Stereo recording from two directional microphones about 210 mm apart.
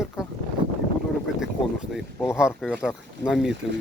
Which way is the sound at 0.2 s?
5° right (ahead or behind).